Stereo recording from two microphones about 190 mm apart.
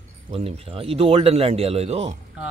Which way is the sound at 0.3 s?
30° right (ahead or behind).